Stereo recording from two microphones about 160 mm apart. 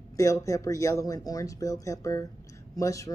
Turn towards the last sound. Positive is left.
turn(degrees=20)  # may be behind; listen again after turning